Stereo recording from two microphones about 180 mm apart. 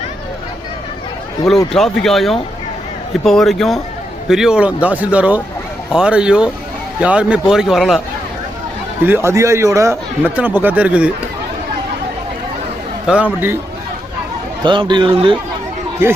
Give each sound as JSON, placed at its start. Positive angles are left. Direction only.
{"t": 1.7, "sound": "a man's voice", "side_deg": 0}
{"t": 9.0, "sound": "a man's voice", "side_deg": -15}
{"t": 13.1, "sound": "a man's voice", "side_deg": -5}
{"t": 14.6, "sound": "a man's voice", "side_deg": -25}